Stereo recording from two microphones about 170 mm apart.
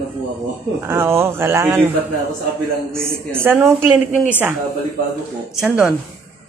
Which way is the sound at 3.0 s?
15° right (ahead or behind).